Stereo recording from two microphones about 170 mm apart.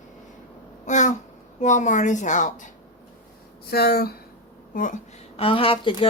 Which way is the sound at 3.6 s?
65° left (ahead or behind).